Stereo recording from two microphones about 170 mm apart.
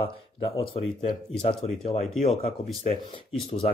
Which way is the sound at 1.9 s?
40° left (ahead or behind).